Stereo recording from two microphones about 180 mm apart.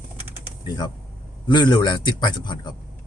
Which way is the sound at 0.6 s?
25° left (ahead or behind).